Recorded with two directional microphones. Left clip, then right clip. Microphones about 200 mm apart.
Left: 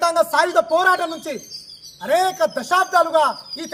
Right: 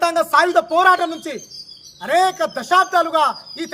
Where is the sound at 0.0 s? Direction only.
10° right (ahead or behind).